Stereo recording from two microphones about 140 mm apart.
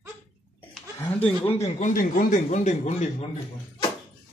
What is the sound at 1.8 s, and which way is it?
A man's voice, 70° left (ahead or behind).